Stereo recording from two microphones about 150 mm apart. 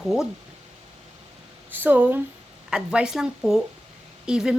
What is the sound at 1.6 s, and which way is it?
A woman's voice, 10° right (ahead or behind).